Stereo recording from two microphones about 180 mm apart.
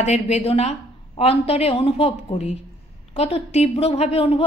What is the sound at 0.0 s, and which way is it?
A woman's voice, 40° left (ahead or behind).